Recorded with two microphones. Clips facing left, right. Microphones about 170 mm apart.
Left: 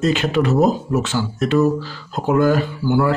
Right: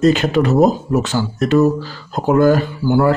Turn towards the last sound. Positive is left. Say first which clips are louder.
# right 3 dB
turn(degrees=-45)  # may be behind; listen again after turning